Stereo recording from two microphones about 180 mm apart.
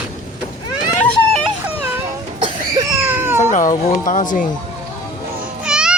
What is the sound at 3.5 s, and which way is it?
Speech, 45° left (ahead or behind).